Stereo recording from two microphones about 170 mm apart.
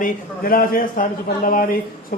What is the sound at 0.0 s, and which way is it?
A man's voice, 55° left (ahead or behind).